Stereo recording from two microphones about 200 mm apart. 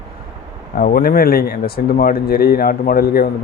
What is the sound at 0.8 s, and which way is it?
Speech, 45° left (ahead or behind).